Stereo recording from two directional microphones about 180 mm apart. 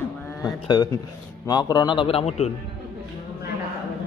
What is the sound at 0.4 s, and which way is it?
A man's voice, 20° left (ahead or behind).